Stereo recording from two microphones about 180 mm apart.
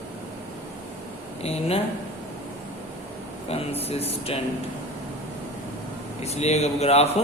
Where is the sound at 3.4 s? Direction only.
35° left (ahead or behind).